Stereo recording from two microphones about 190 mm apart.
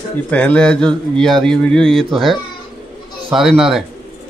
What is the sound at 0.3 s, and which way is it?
Speech, 5° left (ahead or behind).